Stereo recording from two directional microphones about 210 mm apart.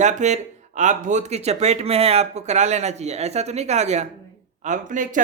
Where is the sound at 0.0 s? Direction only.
35° right (ahead or behind).